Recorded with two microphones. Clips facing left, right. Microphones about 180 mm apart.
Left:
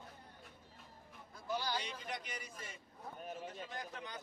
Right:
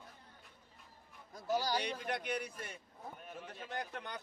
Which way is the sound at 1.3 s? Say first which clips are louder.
Right 5 dB; 40° right (ahead or behind).